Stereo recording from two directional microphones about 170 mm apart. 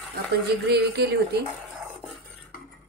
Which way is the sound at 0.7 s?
75° right (ahead or behind).